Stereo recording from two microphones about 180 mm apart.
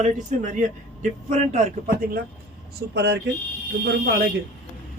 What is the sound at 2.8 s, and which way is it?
A man's voice, 65° right (ahead or behind).